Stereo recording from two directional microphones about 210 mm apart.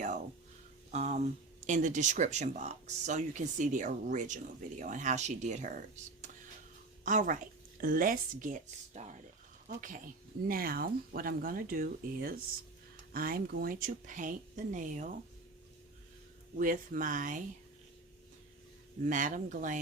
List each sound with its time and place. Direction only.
0.9 s speech: 30° right (ahead or behind)
7.0 s speech: 35° right (ahead or behind)
16.6 s speech: 40° right (ahead or behind)
19.0 s speech: 40° right (ahead or behind)